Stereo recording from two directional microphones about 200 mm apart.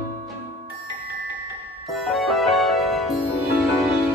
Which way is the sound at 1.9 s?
Centre (ahead or behind).